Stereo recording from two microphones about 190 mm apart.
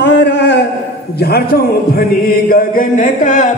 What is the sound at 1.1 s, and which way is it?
Speech, 60° left (ahead or behind).